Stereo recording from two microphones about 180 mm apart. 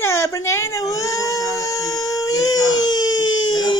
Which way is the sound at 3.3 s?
90° left.